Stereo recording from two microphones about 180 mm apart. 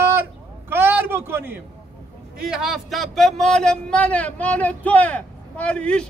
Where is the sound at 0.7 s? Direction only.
10° right (ahead or behind).